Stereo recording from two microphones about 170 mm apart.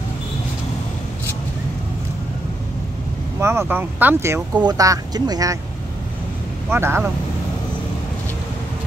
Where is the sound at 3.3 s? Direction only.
15° right (ahead or behind).